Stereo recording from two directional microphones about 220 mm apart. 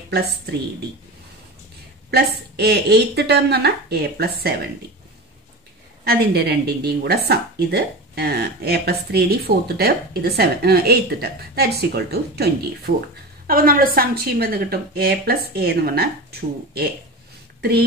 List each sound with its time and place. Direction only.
2.0 s a woman's voice: 50° right (ahead or behind)
6.0 s a woman's voice: 45° right (ahead or behind)